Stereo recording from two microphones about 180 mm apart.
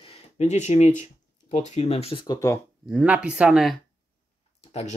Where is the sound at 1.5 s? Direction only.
40° left (ahead or behind); by 2.6 s 20° left (ahead or behind).